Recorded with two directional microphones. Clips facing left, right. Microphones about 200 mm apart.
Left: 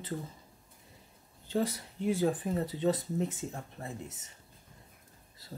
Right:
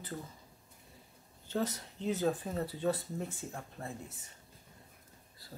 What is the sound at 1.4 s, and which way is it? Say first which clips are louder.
Speech: left 3 dB; 15° left (ahead or behind).